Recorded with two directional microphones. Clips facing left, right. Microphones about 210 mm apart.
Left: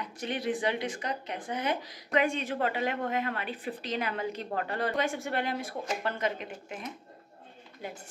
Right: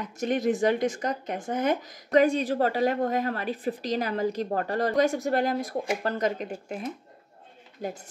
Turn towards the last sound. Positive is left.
turn(degrees=-40)  # may be behind; listen again after turning